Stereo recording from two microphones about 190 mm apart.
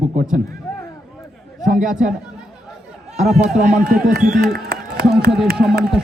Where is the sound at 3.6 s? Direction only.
50° right (ahead or behind).